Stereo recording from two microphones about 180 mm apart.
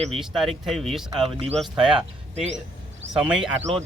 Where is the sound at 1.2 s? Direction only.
35° right (ahead or behind).